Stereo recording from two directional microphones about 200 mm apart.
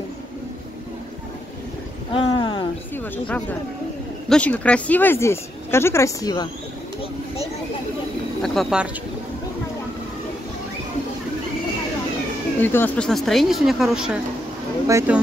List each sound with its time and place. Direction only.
2.1 s a sound: 25° left (ahead or behind)
3.0 s speech: 5° left (ahead or behind)
8.4 s speech: centre (ahead or behind)
12.6 s speech: 10° left (ahead or behind)
14.9 s speech: 15° right (ahead or behind)